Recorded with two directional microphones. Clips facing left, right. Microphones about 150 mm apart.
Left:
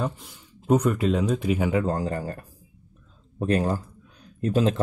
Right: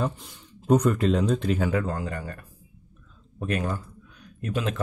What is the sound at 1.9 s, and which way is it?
Speech, 35° left (ahead or behind).